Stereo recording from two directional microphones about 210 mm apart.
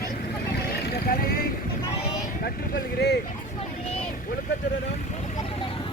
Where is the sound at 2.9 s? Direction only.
50° left (ahead or behind).